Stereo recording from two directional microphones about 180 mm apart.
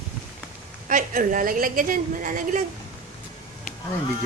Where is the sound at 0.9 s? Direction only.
50° right (ahead or behind).